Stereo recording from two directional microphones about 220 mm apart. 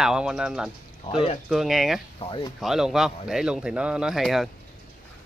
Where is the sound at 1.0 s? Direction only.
25° left (ahead or behind).